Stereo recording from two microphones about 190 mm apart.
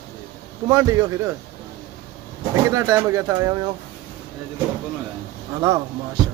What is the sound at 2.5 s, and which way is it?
Speech, 15° right (ahead or behind).